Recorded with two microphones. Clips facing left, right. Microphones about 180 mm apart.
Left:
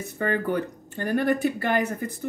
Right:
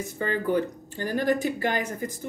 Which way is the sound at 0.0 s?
60° left (ahead or behind).